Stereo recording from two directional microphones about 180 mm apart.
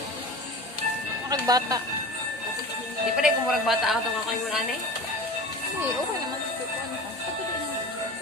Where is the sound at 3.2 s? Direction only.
Centre (ahead or behind).